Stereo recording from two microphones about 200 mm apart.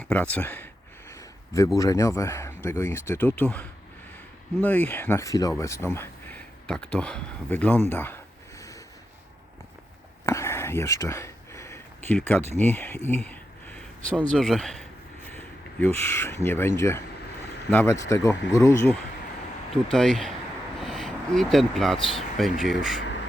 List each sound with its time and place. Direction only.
0.0 s speech: 5° left (ahead or behind)
10.2 s a sound: 15° left (ahead or behind)
12.5 s speech: 10° left (ahead or behind)
13.2 s a sound: 10° left (ahead or behind)
14.2 s speech: centre (ahead or behind)
19.7 s speech: centre (ahead or behind)
20.7 s a sound: centre (ahead or behind)
21.9 s speech: 25° left (ahead or behind)
22.4 s speech: centre (ahead or behind)